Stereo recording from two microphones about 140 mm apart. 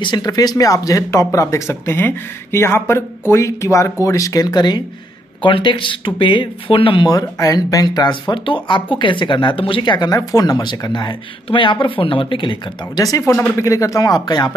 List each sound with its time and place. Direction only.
0.0 s speech: 30° left (ahead or behind)